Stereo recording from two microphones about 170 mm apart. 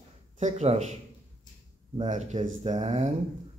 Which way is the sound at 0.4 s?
40° right (ahead or behind).